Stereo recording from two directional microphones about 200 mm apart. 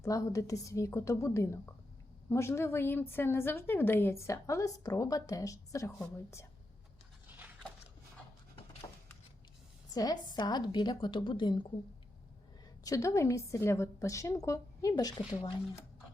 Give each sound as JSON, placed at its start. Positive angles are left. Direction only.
{"t": 0.0, "sound": "a woman's voice", "side_deg": 15}
{"t": 7.3, "sound": "a sound", "side_deg": -10}
{"t": 9.9, "sound": "a woman's voice", "side_deg": 20}
{"t": 12.8, "sound": "a woman's voice", "side_deg": 15}